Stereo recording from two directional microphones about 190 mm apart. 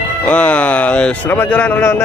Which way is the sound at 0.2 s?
5° left (ahead or behind).